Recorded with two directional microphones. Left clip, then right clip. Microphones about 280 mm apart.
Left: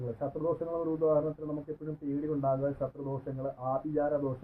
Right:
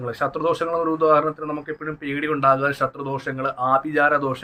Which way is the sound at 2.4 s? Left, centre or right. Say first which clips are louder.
Right 14 dB; right.